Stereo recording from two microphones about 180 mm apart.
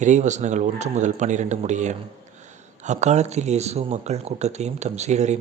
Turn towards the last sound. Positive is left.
turn(degrees=-40)  # may be behind; listen again after turning